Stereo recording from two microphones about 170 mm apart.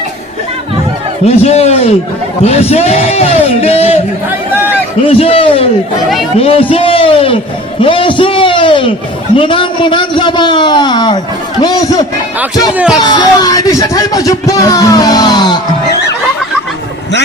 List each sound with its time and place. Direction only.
1.2 s a man's voice: 35° left (ahead or behind)
4.3 s a sound: 10° right (ahead or behind)
5.0 s a sound: 35° left (ahead or behind)
6.4 s a man's voice: 35° left (ahead or behind)
12.7 s speech: 5° right (ahead or behind)
13.0 s speech: 25° left (ahead or behind)